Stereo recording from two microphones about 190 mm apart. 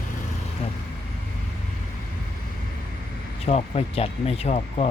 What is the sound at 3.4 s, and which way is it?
Speech, 35° left (ahead or behind).